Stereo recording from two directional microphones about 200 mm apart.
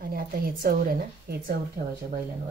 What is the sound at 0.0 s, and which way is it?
A woman's voice, 50° right (ahead or behind).